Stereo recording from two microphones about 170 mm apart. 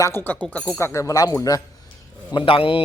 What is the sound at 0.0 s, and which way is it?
A man's voice, 10° left (ahead or behind).